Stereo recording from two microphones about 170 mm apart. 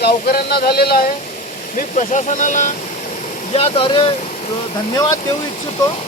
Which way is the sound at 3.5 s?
35° left (ahead or behind).